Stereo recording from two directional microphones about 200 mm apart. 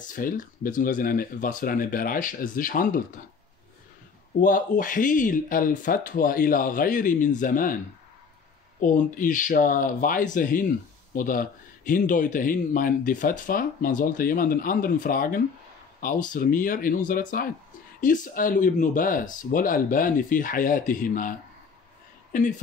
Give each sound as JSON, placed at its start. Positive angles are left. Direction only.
{"t": 0.1, "sound": "speech", "side_deg": 45}
{"t": 4.4, "sound": "speech", "side_deg": 45}
{"t": 8.8, "sound": "speech", "side_deg": 40}